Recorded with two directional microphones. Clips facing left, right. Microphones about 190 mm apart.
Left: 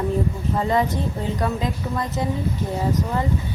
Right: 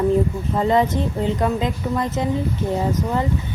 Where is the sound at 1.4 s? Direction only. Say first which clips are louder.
Right 3 dB; 20° right (ahead or behind).